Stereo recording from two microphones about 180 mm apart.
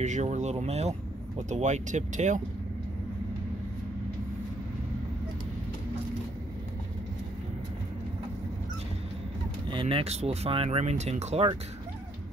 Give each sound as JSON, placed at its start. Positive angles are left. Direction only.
{"t": 0.0, "sound": "speech", "side_deg": -40}
{"t": 9.7, "sound": "speech", "side_deg": -30}